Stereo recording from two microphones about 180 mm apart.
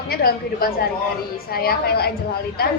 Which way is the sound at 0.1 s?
60° left (ahead or behind).